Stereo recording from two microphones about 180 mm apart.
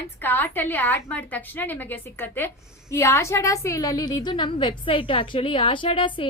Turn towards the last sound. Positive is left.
turn(degrees=30)  # may be behind; listen again after turning